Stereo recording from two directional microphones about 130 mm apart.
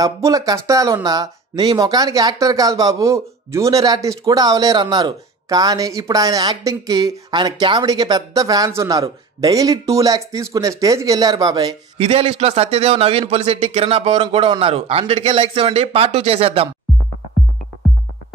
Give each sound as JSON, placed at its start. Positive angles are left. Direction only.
{"t": 0.0, "sound": "speech", "side_deg": -25}
{"t": 12.0, "sound": "a man's voice", "side_deg": -50}